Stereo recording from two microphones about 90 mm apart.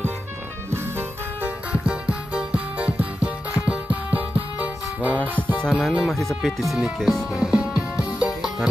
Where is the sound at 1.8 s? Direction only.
15° right (ahead or behind).